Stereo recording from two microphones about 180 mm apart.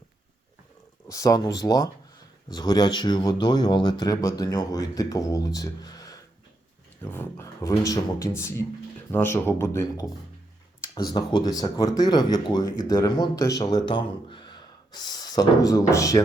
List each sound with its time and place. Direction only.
1.0 s speech: 20° left (ahead or behind)